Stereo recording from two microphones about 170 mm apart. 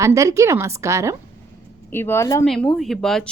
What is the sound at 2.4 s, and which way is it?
Speech, centre (ahead or behind).